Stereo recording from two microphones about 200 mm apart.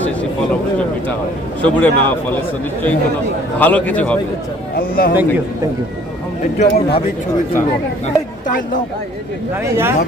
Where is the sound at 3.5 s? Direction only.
5° left (ahead or behind).